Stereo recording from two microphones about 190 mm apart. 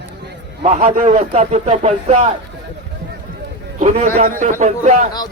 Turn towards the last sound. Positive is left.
turn(degrees=-40)  # may be behind; listen again after turning